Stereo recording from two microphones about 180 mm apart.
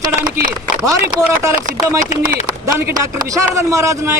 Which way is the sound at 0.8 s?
20° right (ahead or behind).